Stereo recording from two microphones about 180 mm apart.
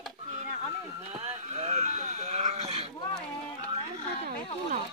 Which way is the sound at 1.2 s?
40° right (ahead or behind).